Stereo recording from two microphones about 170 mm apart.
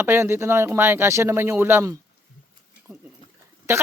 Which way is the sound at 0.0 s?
15° right (ahead or behind).